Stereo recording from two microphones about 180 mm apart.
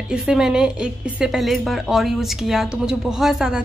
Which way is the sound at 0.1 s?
5° right (ahead or behind).